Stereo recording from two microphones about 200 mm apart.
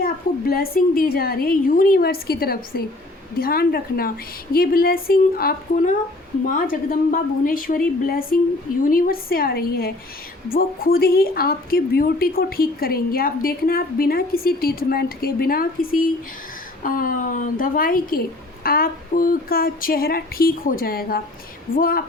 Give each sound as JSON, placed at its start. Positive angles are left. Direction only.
{"t": 0.0, "sound": "a woman's voice", "side_deg": 50}